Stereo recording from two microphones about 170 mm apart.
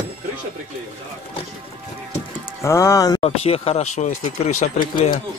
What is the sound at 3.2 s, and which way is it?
Speech, 35° left (ahead or behind).